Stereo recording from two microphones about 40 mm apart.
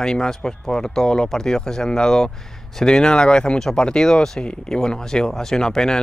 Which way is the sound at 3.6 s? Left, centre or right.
Centre.